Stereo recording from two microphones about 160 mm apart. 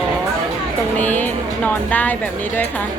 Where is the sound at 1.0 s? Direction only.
10° left (ahead or behind).